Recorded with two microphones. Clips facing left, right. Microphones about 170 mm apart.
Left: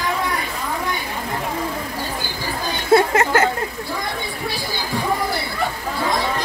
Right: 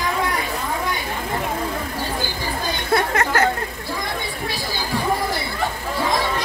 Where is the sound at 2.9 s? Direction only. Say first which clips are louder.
Left 6 dB; 25° left (ahead or behind).